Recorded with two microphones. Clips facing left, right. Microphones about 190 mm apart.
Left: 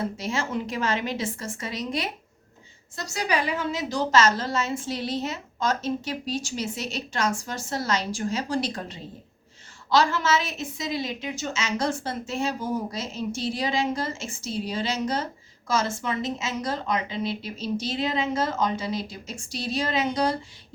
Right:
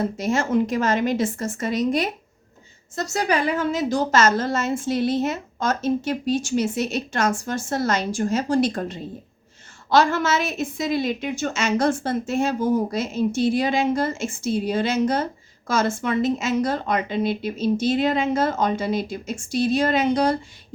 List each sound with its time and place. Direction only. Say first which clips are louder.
0.2 s a woman's voice: right 8 dB; 50° right (ahead or behind)